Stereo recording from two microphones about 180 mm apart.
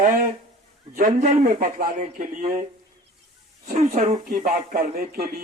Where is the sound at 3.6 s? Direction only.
40° right (ahead or behind); by 5.2 s 60° right (ahead or behind).